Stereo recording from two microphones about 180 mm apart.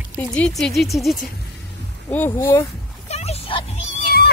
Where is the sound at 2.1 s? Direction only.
15° left (ahead or behind).